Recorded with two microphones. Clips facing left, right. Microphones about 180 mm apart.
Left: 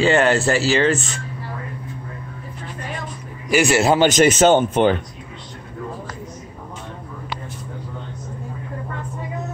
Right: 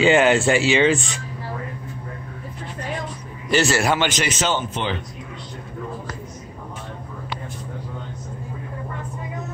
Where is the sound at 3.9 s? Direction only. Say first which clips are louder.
Left 9 dB; 45° left (ahead or behind).